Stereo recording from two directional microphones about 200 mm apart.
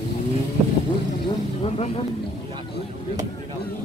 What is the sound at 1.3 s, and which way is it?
Vehicle, 30° left (ahead or behind).